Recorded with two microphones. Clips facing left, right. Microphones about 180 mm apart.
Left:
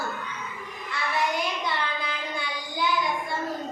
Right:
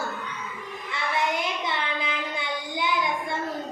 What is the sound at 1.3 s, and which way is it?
Child singing, 20° right (ahead or behind).